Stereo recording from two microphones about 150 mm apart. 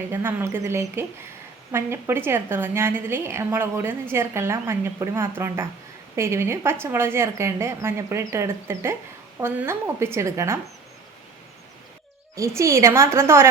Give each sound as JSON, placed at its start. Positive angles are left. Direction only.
{"t": 0.1, "sound": "a woman's voice", "side_deg": -15}
{"t": 12.4, "sound": "a woman's voice", "side_deg": -20}